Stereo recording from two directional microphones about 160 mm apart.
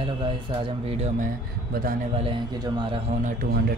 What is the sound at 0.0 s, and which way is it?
Speech, 30° right (ahead or behind).